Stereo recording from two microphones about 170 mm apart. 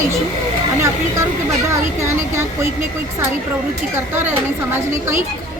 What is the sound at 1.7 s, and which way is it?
A woman's voice, 15° right (ahead or behind).